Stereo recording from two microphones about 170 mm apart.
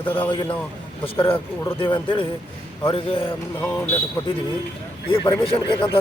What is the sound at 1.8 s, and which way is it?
Speech, 30° left (ahead or behind).